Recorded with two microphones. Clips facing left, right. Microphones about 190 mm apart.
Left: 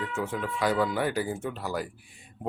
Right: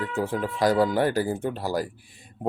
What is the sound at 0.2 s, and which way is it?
Speech, 35° right (ahead or behind).